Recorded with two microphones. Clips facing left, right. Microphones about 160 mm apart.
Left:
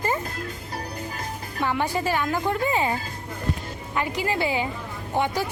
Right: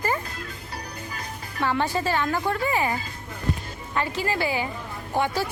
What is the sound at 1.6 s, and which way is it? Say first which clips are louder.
A woman's voice: even; 15° left (ahead or behind).